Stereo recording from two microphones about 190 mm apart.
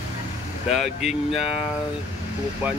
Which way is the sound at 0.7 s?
Centre (ahead or behind).